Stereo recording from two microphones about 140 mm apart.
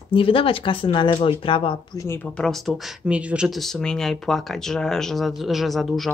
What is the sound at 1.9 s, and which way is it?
Speech, 15° left (ahead or behind).